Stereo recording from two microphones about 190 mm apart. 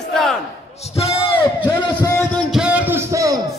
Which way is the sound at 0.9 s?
30° left (ahead or behind).